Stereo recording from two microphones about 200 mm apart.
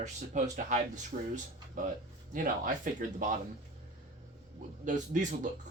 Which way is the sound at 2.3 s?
40° right (ahead or behind).